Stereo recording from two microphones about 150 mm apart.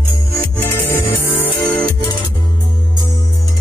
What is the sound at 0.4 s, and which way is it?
Music, 15° left (ahead or behind).